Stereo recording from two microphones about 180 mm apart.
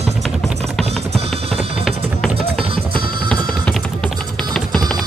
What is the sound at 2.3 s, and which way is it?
Music, 30° right (ahead or behind).